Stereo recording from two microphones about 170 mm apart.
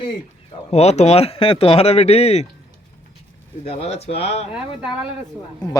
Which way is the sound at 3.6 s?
35° left (ahead or behind).